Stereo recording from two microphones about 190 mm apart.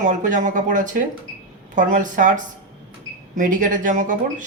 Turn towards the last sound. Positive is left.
turn(degrees=-45)  # may be behind; listen again after turning